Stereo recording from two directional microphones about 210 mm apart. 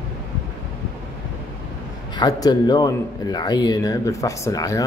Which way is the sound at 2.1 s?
20° left (ahead or behind).